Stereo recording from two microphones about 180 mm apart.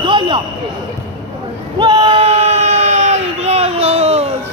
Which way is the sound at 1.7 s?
25° right (ahead or behind).